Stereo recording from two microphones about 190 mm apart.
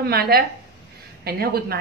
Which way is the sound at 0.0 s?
55° right (ahead or behind).